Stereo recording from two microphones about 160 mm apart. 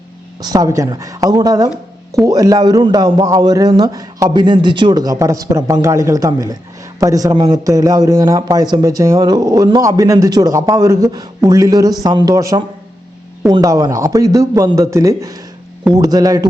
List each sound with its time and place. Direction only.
0.3 s a man's voice: 25° right (ahead or behind)